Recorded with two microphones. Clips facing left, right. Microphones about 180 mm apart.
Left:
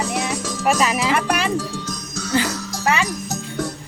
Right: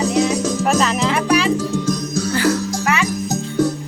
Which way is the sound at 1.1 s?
50° left (ahead or behind).